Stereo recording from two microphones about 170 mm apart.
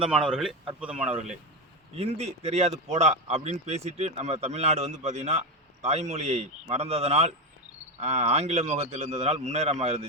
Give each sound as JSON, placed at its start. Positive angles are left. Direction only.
{"t": 0.3, "sound": "speech", "side_deg": 0}
{"t": 2.0, "sound": "a man's voice", "side_deg": -40}